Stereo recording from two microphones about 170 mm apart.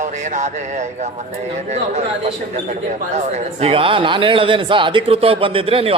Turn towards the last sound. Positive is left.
turn(degrees=-35)  # may be behind; listen again after turning